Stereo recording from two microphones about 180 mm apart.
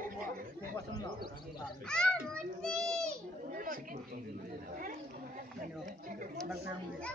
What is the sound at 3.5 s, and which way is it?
Chatter, 50° right (ahead or behind).